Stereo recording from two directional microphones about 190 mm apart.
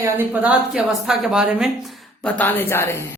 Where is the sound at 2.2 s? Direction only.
10° left (ahead or behind).